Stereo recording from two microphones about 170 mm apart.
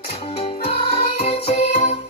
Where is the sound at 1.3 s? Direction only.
35° left (ahead or behind).